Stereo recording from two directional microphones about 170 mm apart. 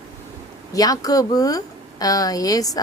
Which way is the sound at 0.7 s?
20° left (ahead or behind).